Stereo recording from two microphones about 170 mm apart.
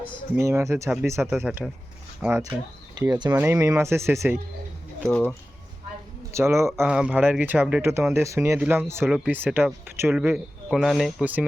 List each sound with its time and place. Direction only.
0.3 s speech: 15° right (ahead or behind)
3.0 s speech: 25° right (ahead or behind)
5.0 s speech: 5° left (ahead or behind)
6.3 s speech: 15° right (ahead or behind)
6.7 s speech: 5° right (ahead or behind)